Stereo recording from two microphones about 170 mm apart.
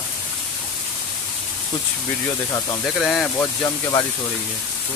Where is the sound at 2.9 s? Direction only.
5° left (ahead or behind).